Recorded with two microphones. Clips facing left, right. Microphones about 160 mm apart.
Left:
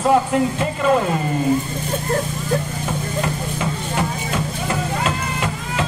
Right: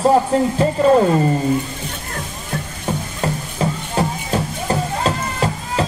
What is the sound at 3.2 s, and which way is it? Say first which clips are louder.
Music: right 2 dB; 35° right (ahead or behind).